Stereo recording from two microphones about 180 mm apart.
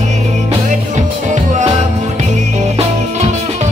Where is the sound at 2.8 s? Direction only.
40° right (ahead or behind).